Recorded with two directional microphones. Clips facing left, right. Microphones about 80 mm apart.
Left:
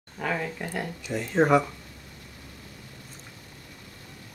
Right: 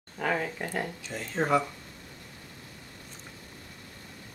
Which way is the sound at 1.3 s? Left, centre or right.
Left.